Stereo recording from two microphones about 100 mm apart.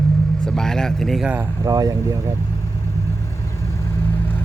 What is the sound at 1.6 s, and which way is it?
Speech, 40° right (ahead or behind).